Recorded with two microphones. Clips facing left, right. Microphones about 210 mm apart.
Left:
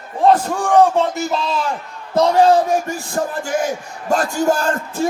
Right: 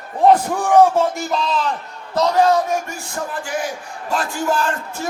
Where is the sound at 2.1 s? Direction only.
30° left (ahead or behind).